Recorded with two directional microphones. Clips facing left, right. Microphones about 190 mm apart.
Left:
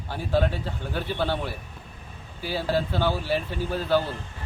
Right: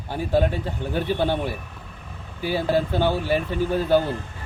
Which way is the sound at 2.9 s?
15° right (ahead or behind).